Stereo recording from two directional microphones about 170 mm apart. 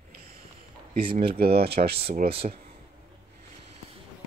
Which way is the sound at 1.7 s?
40° right (ahead or behind).